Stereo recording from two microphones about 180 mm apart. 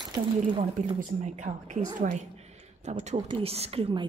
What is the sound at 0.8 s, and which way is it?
A woman's voice, 40° right (ahead or behind).